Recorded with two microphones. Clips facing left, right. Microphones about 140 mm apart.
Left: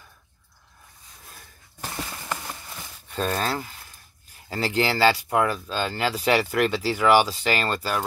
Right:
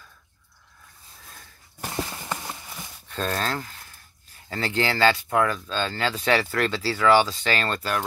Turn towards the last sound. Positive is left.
turn(degrees=5)  # may be behind; listen again after turning